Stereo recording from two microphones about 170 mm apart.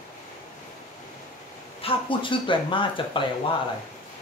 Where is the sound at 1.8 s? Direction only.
30° left (ahead or behind).